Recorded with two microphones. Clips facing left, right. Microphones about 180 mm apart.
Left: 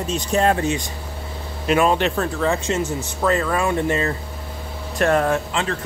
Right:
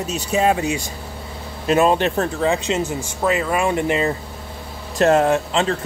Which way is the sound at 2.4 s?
20° right (ahead or behind).